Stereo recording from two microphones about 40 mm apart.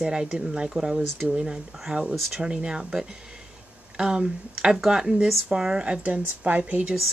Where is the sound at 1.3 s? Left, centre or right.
Right.